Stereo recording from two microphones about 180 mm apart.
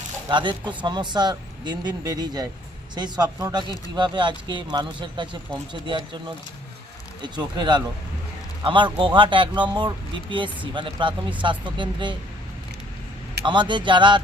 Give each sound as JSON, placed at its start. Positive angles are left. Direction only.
{"t": 0.3, "sound": "speech", "side_deg": -25}
{"t": 7.2, "sound": "speech", "side_deg": -25}
{"t": 13.4, "sound": "speech", "side_deg": -25}